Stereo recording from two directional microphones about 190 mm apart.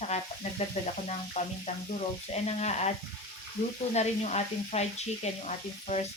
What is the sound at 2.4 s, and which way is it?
Speech, 35° left (ahead or behind).